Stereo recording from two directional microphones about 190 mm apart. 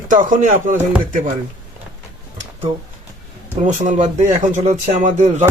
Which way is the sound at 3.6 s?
40° right (ahead or behind).